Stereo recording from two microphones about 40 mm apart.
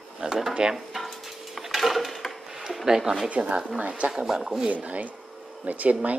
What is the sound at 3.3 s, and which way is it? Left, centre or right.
Speech, right.